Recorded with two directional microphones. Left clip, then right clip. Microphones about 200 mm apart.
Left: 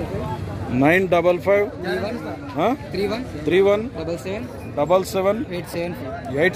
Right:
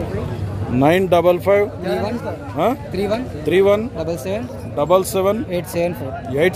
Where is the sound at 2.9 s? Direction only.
50° right (ahead or behind).